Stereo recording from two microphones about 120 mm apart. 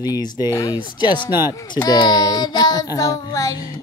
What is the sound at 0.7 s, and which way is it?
A child's voice, 40° left (ahead or behind).